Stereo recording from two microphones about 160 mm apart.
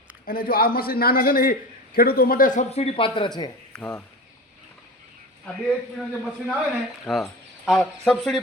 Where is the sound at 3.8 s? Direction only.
10° left (ahead or behind).